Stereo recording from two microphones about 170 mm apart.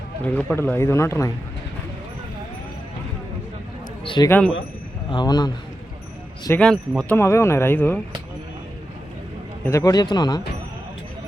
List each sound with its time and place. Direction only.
0.3 s speech: 10° left (ahead or behind)
4.0 s a sound: 30° left (ahead or behind)
4.3 s speech: 10° left (ahead or behind)
5.0 s speech: 25° left (ahead or behind)
6.6 s speech: 5° left (ahead or behind)
7.2 s speech: 15° left (ahead or behind)
9.6 s speech: 15° left (ahead or behind)